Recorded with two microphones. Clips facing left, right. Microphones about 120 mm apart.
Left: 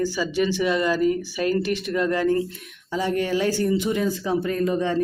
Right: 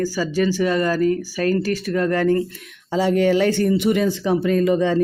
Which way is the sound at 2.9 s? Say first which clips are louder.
Right 6 dB; 90° right.